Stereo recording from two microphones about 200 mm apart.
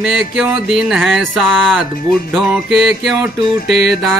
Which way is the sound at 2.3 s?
Centre (ahead or behind).